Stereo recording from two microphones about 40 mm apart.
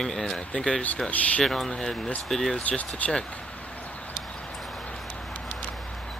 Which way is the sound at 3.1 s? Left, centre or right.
Left.